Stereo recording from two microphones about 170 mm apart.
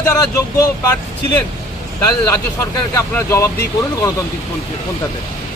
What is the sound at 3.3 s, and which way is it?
Speech, 15° left (ahead or behind).